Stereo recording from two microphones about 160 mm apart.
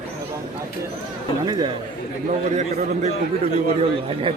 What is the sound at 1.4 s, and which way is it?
Speech, 25° right (ahead or behind).